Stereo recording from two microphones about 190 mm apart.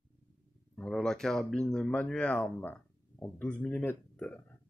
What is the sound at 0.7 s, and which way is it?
Speech, centre (ahead or behind).